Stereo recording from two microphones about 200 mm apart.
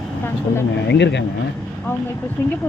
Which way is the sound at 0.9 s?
60° left (ahead or behind).